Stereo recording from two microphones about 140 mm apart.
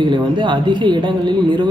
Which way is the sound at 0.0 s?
35° right (ahead or behind).